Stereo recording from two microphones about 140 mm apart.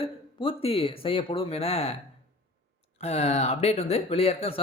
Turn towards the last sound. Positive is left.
turn(degrees=45)  # may be behind; listen again after turning